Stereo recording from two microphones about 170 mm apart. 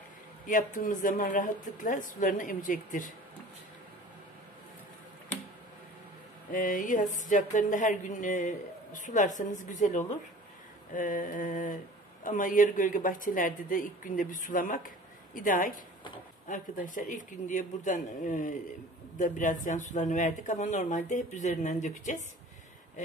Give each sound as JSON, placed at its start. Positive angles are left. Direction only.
{"t": 0.5, "sound": "speech", "side_deg": 55}
{"t": 6.5, "sound": "speech", "side_deg": 50}